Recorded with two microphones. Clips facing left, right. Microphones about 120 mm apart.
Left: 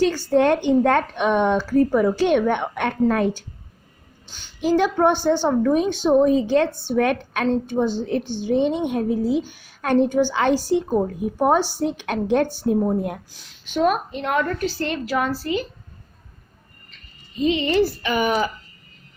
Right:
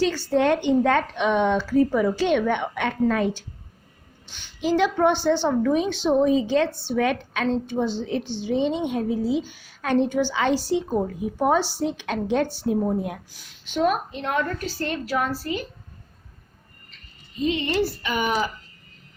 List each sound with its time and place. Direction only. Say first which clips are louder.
0.0 s a woman's voice: left 3 dB; 45° left (ahead or behind)
13.7 s a woman's voice: left 2 dB; 65° left (ahead or behind); by 15.6 s 85° left
17.4 s a woman's voice: left 4 dB; 90° left; by 18.3 s 70° left (ahead or behind)